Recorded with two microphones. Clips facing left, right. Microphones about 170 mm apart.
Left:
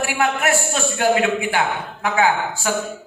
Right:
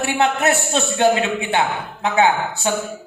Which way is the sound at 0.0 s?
20° right (ahead or behind).